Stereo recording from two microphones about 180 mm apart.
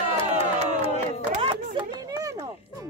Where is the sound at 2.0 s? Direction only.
20° right (ahead or behind).